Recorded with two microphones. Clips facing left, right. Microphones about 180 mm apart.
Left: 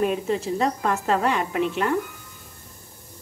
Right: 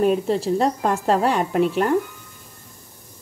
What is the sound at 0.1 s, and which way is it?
A woman's voice, 35° right (ahead or behind).